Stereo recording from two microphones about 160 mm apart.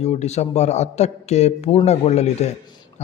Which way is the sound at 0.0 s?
45° left (ahead or behind).